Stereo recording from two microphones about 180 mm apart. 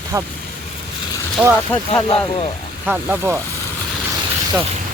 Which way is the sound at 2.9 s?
10° right (ahead or behind).